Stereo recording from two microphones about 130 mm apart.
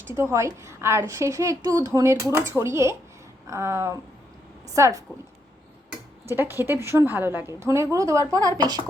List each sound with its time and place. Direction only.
0.1 s a woman's voice: 20° right (ahead or behind)
6.2 s a woman's voice: 15° right (ahead or behind)